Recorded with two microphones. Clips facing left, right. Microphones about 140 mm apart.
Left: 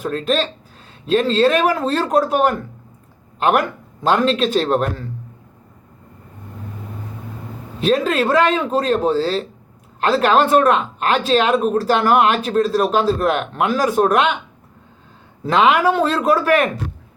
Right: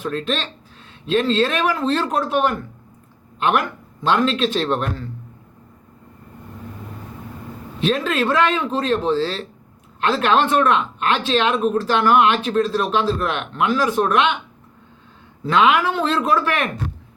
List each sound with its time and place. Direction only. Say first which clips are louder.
0.0 s speech: left 4 dB; 40° left (ahead or behind)
4.0 s speech: left 2 dB; 40° left (ahead or behind)
7.8 s speech: left 3 dB; 40° left (ahead or behind)
15.4 s speech: left 2 dB; 40° left (ahead or behind)